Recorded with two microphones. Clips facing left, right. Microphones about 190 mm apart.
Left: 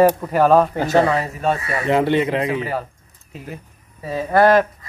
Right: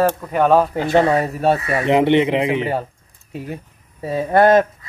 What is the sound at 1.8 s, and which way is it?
Speech, 20° right (ahead or behind).